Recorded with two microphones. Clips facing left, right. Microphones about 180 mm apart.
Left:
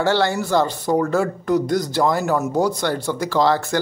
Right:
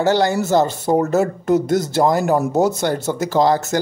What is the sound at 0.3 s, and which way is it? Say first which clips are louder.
Speech: right 3 dB; 45° right (ahead or behind).